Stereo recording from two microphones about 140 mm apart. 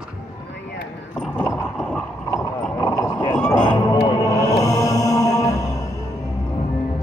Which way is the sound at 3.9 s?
35° left (ahead or behind).